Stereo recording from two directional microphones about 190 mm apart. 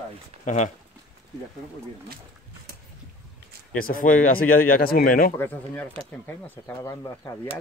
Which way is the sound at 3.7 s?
50° left (ahead or behind).